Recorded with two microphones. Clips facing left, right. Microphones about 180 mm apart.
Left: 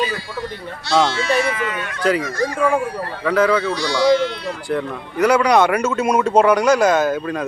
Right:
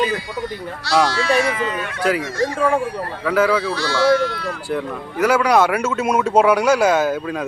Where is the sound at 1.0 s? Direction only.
25° left (ahead or behind).